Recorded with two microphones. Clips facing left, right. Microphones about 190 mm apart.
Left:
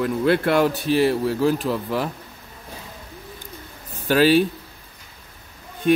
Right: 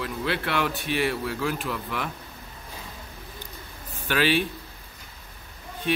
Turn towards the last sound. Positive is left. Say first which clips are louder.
# left 9 dB
turn(degrees=45)  # may be behind; listen again after turning